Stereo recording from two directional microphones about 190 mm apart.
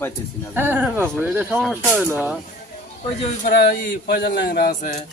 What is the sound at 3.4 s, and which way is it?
A man's voice, 55° left (ahead or behind).